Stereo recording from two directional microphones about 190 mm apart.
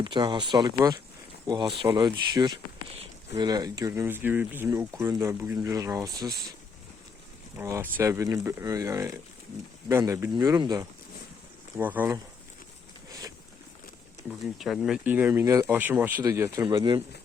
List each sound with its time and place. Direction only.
0.0 s speech: 25° right (ahead or behind)
7.5 s speech: 15° right (ahead or behind)
13.1 s a sound: 20° right (ahead or behind)
14.3 s speech: centre (ahead or behind); by 17.0 s 25° right (ahead or behind)